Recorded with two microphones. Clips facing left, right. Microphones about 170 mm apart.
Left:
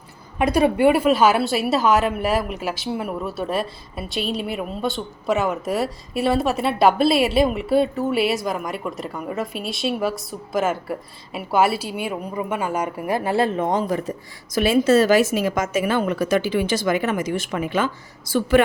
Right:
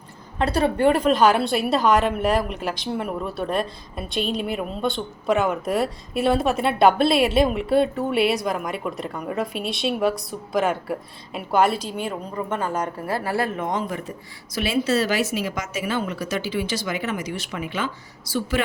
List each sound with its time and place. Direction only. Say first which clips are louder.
0.3 s a woman's voice: left 3 dB; 10° left (ahead or behind); by 18.6 s 55° left (ahead or behind)